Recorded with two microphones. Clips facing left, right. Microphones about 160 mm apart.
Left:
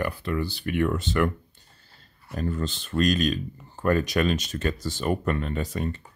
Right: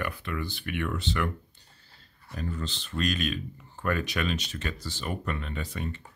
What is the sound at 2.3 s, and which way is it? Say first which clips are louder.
Speech: left 6 dB; 45° left (ahead or behind).